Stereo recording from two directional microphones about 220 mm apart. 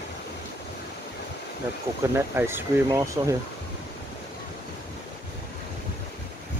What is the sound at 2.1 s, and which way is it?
Speech, 10° right (ahead or behind).